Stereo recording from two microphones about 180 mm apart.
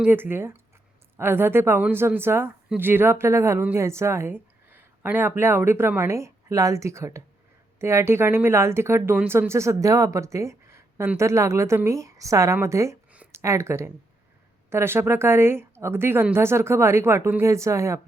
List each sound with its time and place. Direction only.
0.0 s speech: 10° right (ahead or behind)